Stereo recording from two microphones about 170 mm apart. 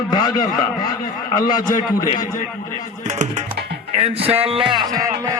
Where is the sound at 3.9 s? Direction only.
35° right (ahead or behind); by 5.1 s 20° right (ahead or behind).